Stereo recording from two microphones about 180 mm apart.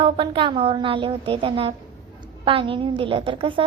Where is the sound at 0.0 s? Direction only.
25° right (ahead or behind).